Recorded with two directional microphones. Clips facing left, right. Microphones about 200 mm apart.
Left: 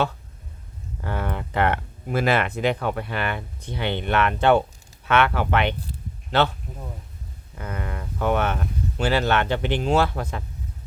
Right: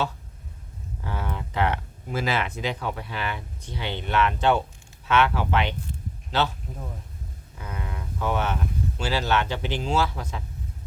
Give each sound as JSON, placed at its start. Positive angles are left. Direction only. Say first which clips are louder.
{"t": 1.0, "sound": "speech", "louder": "left 4 dB", "side_deg": 60}
{"t": 7.6, "sound": "speech", "louder": "left 4 dB", "side_deg": 55}